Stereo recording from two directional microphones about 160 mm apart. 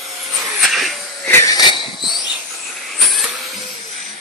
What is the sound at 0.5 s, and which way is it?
Vacuum cleaner, centre (ahead or behind).